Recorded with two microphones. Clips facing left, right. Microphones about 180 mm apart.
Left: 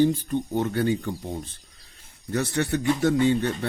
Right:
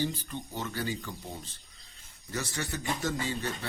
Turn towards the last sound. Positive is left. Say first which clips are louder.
# left 12 dB
turn(degrees=60)  # may be behind; listen again after turning